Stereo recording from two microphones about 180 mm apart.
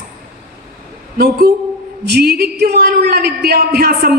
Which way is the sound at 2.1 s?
60° right (ahead or behind).